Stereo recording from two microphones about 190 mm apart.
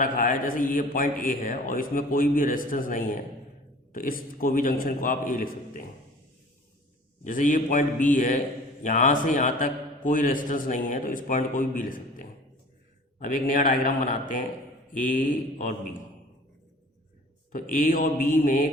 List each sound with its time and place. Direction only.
0.0 s a man's voice: 45° left (ahead or behind)
7.3 s a man's voice: 45° left (ahead or behind)
17.5 s a man's voice: 45° left (ahead or behind)